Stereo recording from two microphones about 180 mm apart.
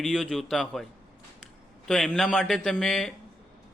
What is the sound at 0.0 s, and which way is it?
Speech, centre (ahead or behind).